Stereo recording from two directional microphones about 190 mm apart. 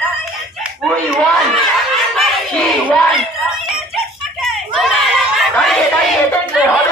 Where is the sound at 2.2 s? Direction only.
Centre (ahead or behind).